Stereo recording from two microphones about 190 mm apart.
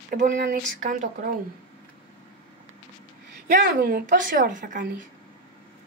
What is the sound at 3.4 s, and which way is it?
Speech, 50° right (ahead or behind).